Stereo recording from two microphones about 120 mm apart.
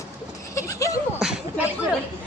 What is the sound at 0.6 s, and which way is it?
Speech, 25° left (ahead or behind).